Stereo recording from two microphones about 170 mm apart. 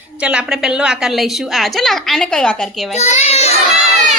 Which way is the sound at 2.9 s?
40° left (ahead or behind).